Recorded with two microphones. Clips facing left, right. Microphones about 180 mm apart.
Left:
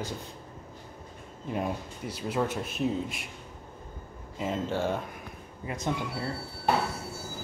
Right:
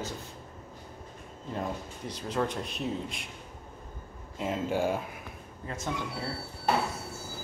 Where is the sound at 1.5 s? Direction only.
10° left (ahead or behind).